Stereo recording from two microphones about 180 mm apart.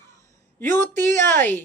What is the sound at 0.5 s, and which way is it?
Speech, 10° left (ahead or behind).